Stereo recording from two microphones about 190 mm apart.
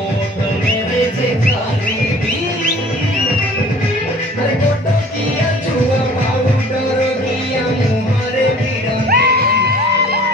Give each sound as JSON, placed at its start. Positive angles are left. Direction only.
{"t": 9.1, "sound": "music", "side_deg": -55}